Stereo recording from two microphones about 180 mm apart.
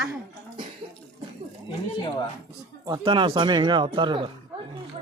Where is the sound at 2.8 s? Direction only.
25° right (ahead or behind).